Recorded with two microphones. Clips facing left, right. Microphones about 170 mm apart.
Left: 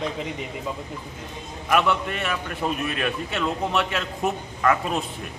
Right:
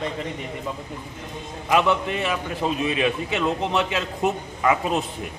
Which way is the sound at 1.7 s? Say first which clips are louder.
Right 2 dB; 20° right (ahead or behind).